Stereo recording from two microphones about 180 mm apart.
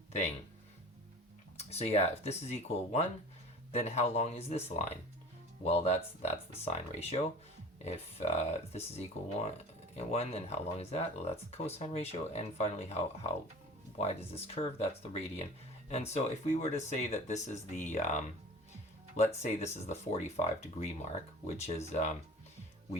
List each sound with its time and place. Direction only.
1.5 s speech: 35° left (ahead or behind)